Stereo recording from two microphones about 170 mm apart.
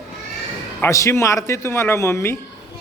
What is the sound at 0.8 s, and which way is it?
A man's voice, 15° left (ahead or behind).